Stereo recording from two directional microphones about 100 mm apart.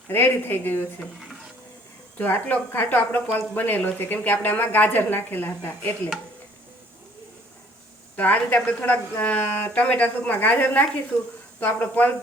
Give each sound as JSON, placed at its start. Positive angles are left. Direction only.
{"t": 0.1, "sound": "speech", "side_deg": 20}
{"t": 2.1, "sound": "speech", "side_deg": 20}
{"t": 8.1, "sound": "a woman's voice", "side_deg": 15}